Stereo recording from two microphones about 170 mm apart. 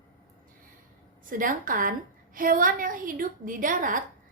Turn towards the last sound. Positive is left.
turn(degrees=-50)  # may be behind; listen again after turning